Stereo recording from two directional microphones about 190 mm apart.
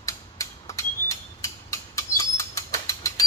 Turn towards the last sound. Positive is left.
turn(degrees=15)  # may be behind; listen again after turning